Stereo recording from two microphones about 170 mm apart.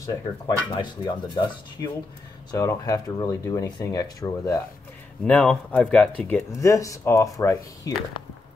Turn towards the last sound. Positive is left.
turn(degrees=20)  # may be behind; listen again after turning